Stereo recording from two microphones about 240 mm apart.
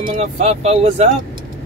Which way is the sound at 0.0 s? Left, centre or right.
Right.